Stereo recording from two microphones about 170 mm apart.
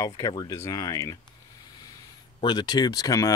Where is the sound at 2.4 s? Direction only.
25° left (ahead or behind).